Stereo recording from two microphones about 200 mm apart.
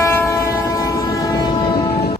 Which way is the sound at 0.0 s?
15° left (ahead or behind).